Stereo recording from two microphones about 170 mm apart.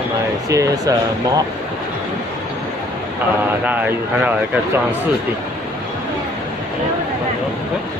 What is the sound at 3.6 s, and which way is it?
Speech, 10° right (ahead or behind).